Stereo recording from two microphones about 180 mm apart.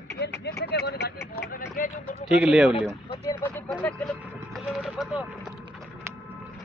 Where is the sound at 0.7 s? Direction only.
65° left (ahead or behind).